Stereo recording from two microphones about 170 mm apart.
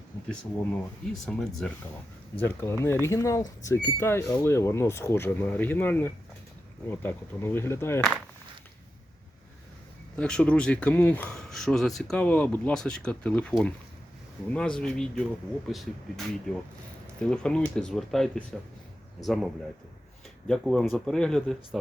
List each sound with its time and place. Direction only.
0.3 s speech: 5° left (ahead or behind)
10.2 s speech: 5° left (ahead or behind)
20.5 s speech: centre (ahead or behind)